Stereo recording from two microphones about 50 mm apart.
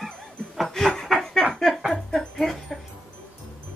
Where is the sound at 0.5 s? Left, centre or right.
Centre.